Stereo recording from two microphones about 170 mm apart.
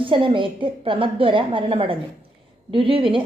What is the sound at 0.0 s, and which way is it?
A woman's voice, 30° right (ahead or behind).